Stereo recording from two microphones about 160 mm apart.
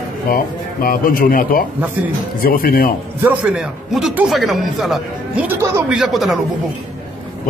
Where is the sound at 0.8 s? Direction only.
60° left (ahead or behind).